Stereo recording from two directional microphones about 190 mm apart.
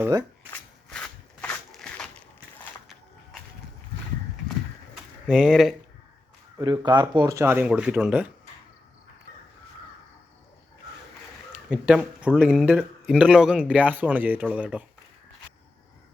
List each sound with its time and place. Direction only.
0.0 s a man's voice: 15° right (ahead or behind)
0.5 s a sound: 5° left (ahead or behind)
5.2 s speech: centre (ahead or behind)
6.6 s a man's voice: 25° right (ahead or behind)
11.7 s a man's voice: 5° right (ahead or behind)